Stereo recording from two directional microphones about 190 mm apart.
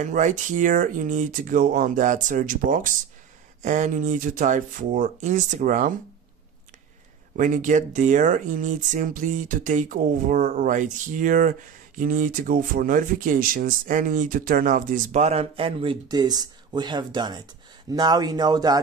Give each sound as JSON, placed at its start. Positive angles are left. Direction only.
{"t": 0.0, "sound": "speech", "side_deg": -40}
{"t": 7.3, "sound": "speech", "side_deg": -40}